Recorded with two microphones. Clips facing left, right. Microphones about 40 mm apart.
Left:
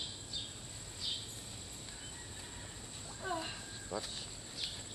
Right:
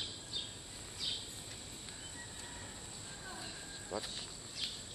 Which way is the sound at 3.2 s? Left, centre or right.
Left.